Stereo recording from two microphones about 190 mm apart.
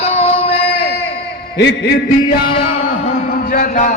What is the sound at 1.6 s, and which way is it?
Speech, 70° left (ahead or behind).